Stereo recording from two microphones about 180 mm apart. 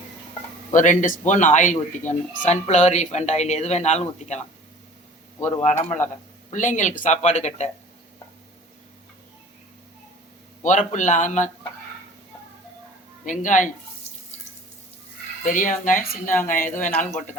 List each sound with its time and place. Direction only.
0.7 s speech: 45° left (ahead or behind)
5.6 s speech: 40° left (ahead or behind)
10.6 s speech: 45° left (ahead or behind)
13.2 s speech: 45° left (ahead or behind)
15.4 s speech: 45° left (ahead or behind)